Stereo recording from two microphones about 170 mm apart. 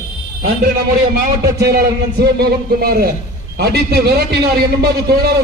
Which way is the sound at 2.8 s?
65° right (ahead or behind).